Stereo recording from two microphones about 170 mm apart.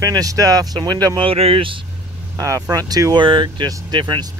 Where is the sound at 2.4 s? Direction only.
20° right (ahead or behind).